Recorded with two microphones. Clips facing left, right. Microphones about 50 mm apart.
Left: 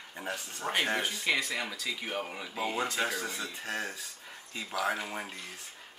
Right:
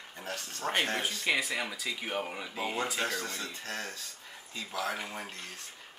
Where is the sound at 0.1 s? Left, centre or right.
Centre.